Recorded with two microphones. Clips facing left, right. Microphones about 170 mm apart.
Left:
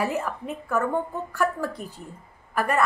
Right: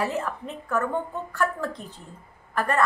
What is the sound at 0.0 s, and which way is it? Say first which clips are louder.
A woman's voice: left 1 dB; 10° left (ahead or behind).